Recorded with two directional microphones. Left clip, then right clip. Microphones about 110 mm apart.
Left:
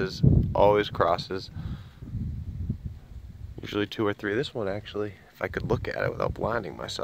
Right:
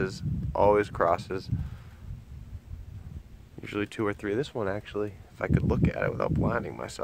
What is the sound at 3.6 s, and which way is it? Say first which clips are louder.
Speech: left 3 dB; 15° left (ahead or behind).